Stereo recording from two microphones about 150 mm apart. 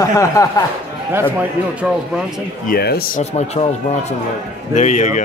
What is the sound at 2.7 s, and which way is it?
Speech, 90° left.